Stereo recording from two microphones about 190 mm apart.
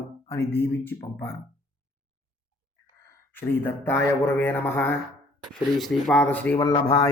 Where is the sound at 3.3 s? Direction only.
10° left (ahead or behind).